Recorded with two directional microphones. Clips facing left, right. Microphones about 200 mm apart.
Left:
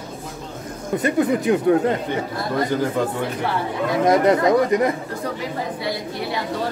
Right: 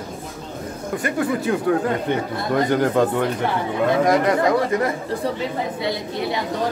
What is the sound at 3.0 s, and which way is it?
Speech, 70° right (ahead or behind).